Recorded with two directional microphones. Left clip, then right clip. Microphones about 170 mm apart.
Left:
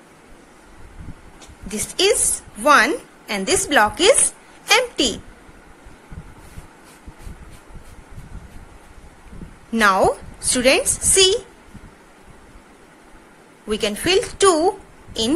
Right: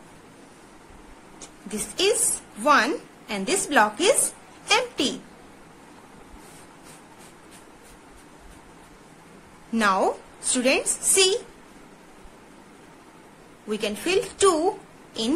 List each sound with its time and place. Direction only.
1.7 s a woman's voice: 15° left (ahead or behind)
4.6 s a sound: 20° left (ahead or behind)
9.7 s a woman's voice: 15° left (ahead or behind)
13.7 s a woman's voice: 20° left (ahead or behind)